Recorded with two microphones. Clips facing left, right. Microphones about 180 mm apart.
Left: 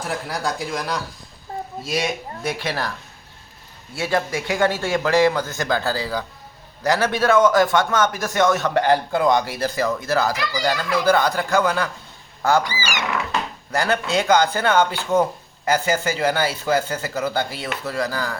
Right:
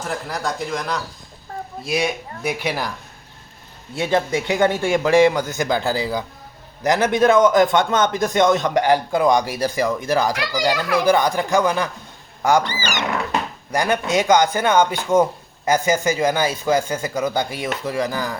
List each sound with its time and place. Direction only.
0.0 s speech: centre (ahead or behind)
1.9 s speech: 10° right (ahead or behind)
3.9 s speech: 20° right (ahead or behind)
12.8 s speech: 10° left (ahead or behind)
13.7 s speech: 15° right (ahead or behind)